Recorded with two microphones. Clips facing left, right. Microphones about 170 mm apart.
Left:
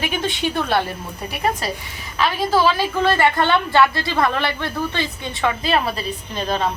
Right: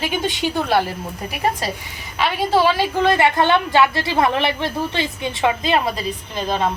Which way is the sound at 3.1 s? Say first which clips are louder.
Right 1 dB; 15° right (ahead or behind).